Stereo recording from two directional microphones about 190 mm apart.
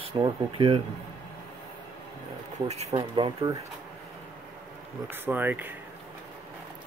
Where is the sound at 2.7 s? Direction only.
35° right (ahead or behind).